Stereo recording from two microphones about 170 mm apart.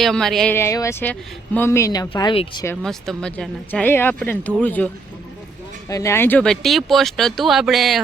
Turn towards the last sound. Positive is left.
turn(degrees=0)  # may be behind; listen again after turning